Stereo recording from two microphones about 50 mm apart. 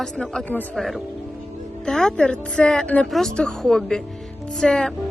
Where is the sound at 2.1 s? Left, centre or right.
Left.